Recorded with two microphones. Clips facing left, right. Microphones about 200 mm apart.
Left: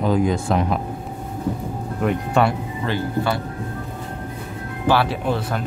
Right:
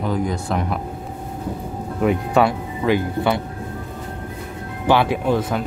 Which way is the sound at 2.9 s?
20° right (ahead or behind).